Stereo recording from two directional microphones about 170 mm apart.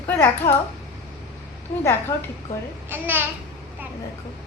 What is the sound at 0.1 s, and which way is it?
Speech, 10° left (ahead or behind).